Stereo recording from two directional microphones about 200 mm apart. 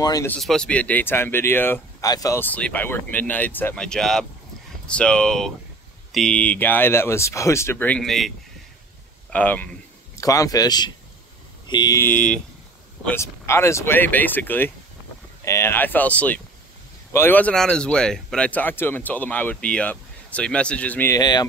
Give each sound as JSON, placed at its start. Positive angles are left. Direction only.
{"t": 0.0, "sound": "speech", "side_deg": 15}
{"t": 0.4, "sound": "speech", "side_deg": 5}
{"t": 9.3, "sound": "speech", "side_deg": 10}